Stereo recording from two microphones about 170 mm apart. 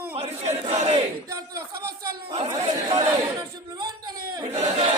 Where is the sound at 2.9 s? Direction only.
25° right (ahead or behind).